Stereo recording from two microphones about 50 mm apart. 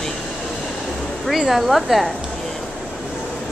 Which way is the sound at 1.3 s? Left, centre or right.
Centre.